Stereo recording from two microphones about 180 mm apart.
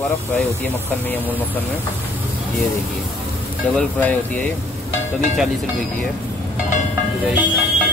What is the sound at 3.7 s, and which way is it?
Speech, 10° left (ahead or behind).